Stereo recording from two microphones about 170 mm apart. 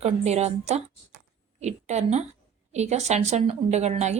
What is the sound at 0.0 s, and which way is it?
A woman's voice, 40° right (ahead or behind).